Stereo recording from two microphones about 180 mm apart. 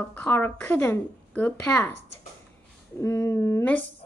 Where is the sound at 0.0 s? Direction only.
10° left (ahead or behind).